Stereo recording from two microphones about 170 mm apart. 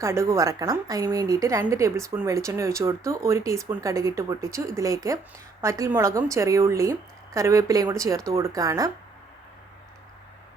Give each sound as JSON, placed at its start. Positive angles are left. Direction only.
{"t": 0.0, "sound": "a woman's voice", "side_deg": -15}